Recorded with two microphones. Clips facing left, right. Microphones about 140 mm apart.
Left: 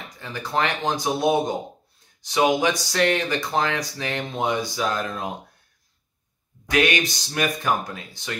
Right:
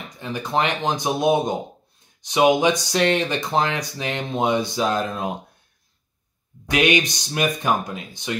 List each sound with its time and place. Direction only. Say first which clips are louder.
0.2 s speech: right 2 dB; 20° right (ahead or behind)
6.6 s speech: right 2 dB; 20° right (ahead or behind)